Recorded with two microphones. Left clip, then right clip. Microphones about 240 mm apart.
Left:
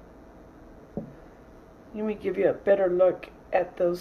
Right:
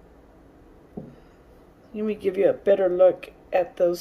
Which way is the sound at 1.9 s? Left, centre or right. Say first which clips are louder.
Right 4 dB; centre.